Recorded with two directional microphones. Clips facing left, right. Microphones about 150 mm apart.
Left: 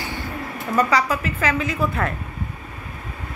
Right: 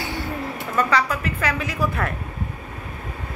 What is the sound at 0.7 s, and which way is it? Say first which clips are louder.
A woman's voice: left 2 dB; 10° left (ahead or behind).